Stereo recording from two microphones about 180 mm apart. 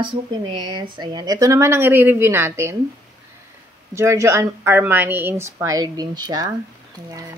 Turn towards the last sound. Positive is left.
turn(degrees=-20)  # may be behind; listen again after turning